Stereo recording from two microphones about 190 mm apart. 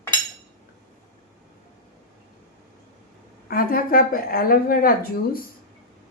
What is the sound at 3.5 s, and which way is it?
A woman's voice, 50° left (ahead or behind).